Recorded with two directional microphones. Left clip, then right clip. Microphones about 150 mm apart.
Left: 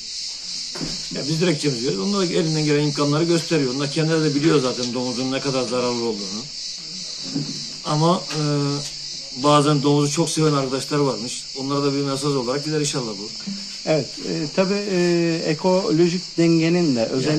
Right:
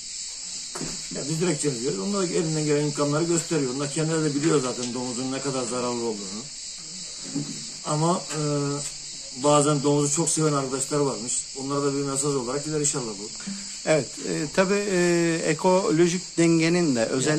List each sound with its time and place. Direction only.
1.1 s speech: 5° right (ahead or behind)
7.9 s cricket: 5° right (ahead or behind)
11.6 s speech: 5° right (ahead or behind)
13.8 s speech: 15° right (ahead or behind)